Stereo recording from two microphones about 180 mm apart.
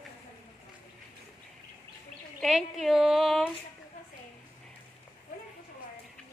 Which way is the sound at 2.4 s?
Centre (ahead or behind).